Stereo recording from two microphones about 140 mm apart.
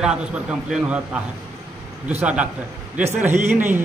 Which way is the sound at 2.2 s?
10° right (ahead or behind).